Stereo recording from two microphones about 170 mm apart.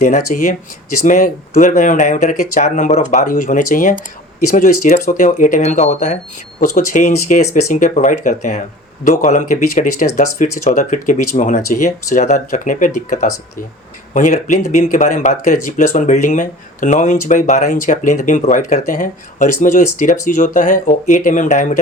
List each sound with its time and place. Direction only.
0.0 s speech: 50° left (ahead or behind)